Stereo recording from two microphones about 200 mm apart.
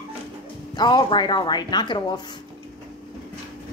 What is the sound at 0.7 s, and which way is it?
Speech, 20° left (ahead or behind).